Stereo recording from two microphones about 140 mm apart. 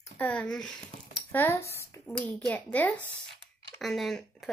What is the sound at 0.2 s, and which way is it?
Speech, 10° left (ahead or behind).